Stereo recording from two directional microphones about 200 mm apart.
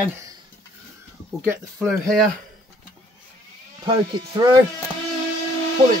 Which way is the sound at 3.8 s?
20° right (ahead or behind).